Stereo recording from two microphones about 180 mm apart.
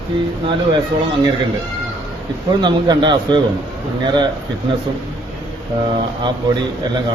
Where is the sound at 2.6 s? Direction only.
25° right (ahead or behind).